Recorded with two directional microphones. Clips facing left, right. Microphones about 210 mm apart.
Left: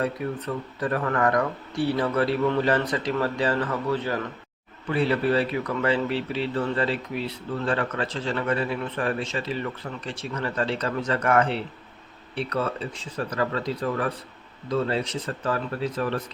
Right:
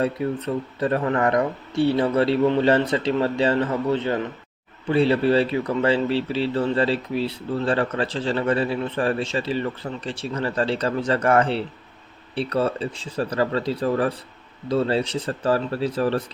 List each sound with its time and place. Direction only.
0.0 s speech: 25° right (ahead or behind)